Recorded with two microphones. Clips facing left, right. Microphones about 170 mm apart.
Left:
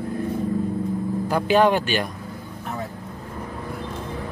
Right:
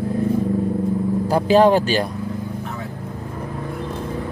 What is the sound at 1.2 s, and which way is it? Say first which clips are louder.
Speech: right 4 dB; 35° right (ahead or behind).